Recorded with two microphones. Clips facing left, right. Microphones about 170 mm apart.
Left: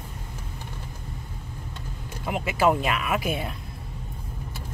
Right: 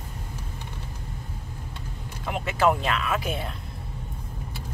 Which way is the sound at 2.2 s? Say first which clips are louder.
Left 1 dB; 10° left (ahead or behind).